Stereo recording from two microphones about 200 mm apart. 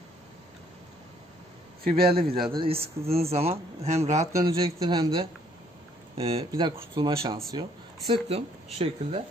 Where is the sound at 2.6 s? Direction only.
30° right (ahead or behind).